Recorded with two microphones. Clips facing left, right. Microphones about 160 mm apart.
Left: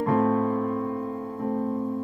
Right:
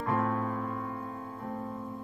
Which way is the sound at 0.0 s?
30° left (ahead or behind).